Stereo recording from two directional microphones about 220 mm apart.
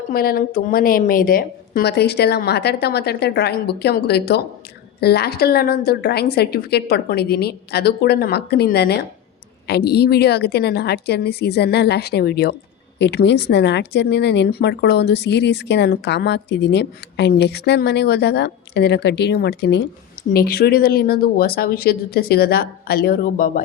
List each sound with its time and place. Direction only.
0.1 s speech: 45° left (ahead or behind)